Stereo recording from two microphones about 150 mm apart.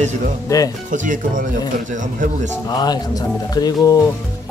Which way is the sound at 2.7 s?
25° left (ahead or behind).